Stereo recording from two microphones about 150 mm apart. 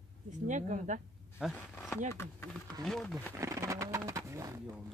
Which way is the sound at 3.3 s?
20° right (ahead or behind).